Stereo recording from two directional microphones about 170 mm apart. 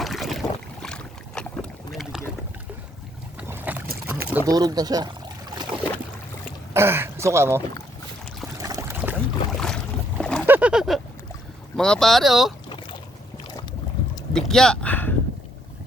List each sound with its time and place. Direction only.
0.0 s boat: centre (ahead or behind)
3.5 s boat: 10° right (ahead or behind)
4.4 s speech: 20° right (ahead or behind)
6.7 s speech: 15° right (ahead or behind)
8.5 s boat: 20° right (ahead or behind)
9.0 s boat: 5° right (ahead or behind)
10.4 s a sound: 10° right (ahead or behind)
11.8 s speech: 5° left (ahead or behind)
12.6 s boat: 30° left (ahead or behind)
14.3 s speech: 5° left (ahead or behind)